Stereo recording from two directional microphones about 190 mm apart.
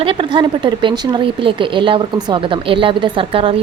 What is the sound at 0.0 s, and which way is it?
Speech, 30° right (ahead or behind).